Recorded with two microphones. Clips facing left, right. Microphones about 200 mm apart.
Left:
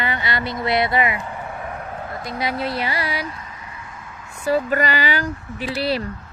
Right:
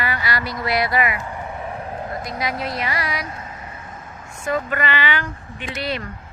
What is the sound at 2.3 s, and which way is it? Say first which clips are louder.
A woman's voice: left 4 dB; 30° left (ahead or behind).